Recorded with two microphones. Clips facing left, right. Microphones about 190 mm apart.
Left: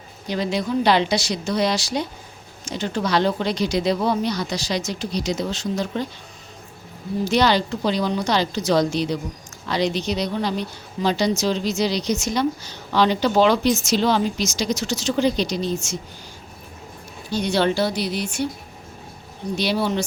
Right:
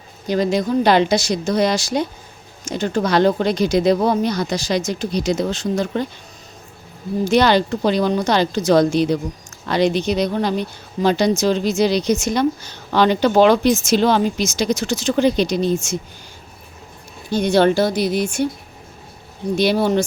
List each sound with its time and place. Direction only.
0.3 s a woman's voice: 45° right (ahead or behind)
7.3 s a woman's voice: 55° right (ahead or behind)
17.3 s a woman's voice: 50° right (ahead or behind)
19.5 s a woman's voice: 50° right (ahead or behind)